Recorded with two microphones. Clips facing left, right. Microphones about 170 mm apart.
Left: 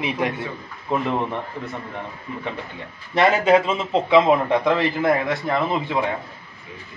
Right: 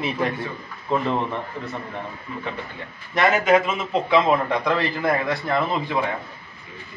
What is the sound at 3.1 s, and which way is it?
A man's voice, 30° left (ahead or behind).